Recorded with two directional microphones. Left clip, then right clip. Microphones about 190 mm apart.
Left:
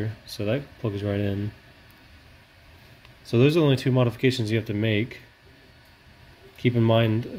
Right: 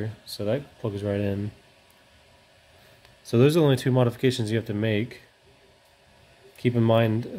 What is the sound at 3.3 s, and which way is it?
Speech, 30° right (ahead or behind).